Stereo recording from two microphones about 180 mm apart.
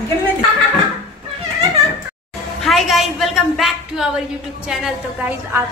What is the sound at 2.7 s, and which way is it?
A woman's voice, centre (ahead or behind).